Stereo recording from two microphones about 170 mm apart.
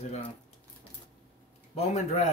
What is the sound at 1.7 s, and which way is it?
Speech, 40° left (ahead or behind).